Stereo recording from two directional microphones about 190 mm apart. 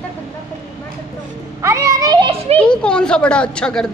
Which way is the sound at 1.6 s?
15° right (ahead or behind).